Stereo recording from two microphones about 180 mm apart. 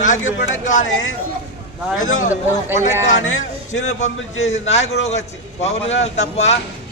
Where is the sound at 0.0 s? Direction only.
45° left (ahead or behind).